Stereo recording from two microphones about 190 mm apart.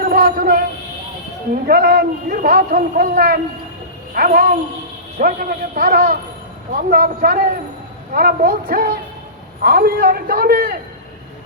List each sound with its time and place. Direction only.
0.0 s music: 50° right (ahead or behind)
1.6 s a man's voice: 55° right (ahead or behind)